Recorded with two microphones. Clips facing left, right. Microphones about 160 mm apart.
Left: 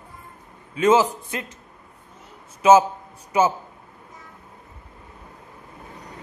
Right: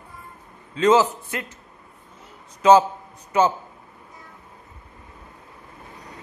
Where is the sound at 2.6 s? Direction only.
10° left (ahead or behind).